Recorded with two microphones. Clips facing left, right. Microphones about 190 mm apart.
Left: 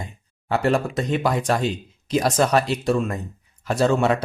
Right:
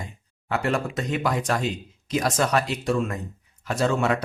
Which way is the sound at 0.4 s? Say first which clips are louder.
Left 4 dB; 30° left (ahead or behind).